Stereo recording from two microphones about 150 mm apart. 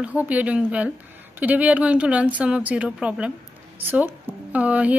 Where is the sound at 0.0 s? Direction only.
10° right (ahead or behind).